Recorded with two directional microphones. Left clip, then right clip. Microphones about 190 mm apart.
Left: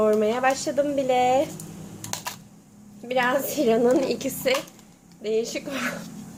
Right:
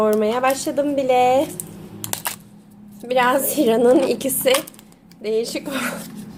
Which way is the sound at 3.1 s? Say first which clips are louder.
Right 6 dB; 30° right (ahead or behind).